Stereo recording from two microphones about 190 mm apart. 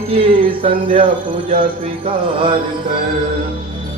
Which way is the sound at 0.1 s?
30° right (ahead or behind).